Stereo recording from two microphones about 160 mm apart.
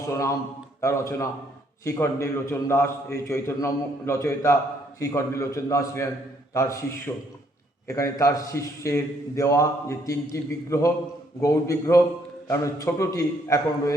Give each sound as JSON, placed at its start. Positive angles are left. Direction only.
{"t": 0.0, "sound": "a man's voice", "side_deg": 20}